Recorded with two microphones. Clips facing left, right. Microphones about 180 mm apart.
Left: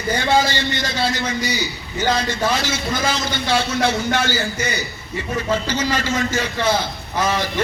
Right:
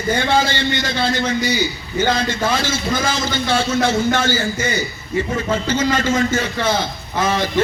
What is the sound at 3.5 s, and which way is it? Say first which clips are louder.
A man's voice: right 1 dB; 50° right (ahead or behind).